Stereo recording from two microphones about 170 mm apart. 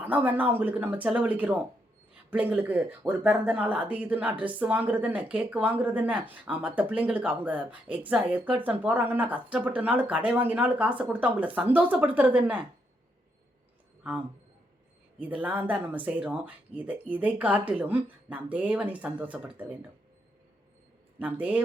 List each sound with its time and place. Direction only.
0.0 s speech: 10° right (ahead or behind)
14.0 s speech: 5° right (ahead or behind)
21.2 s speech: 10° right (ahead or behind)